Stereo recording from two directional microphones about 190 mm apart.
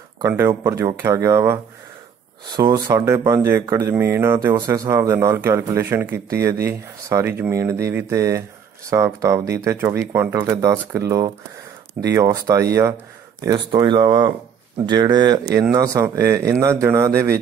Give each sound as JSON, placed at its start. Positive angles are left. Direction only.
{"t": 0.3, "sound": "speech", "side_deg": -15}